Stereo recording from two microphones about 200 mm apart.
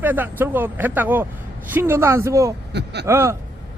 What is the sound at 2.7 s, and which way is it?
Speech, 55° right (ahead or behind).